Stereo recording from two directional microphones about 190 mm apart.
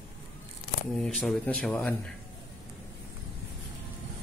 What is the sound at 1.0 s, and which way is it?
Speech, centre (ahead or behind).